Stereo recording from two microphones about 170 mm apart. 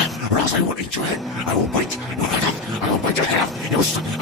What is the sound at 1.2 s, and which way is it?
Speech, centre (ahead or behind).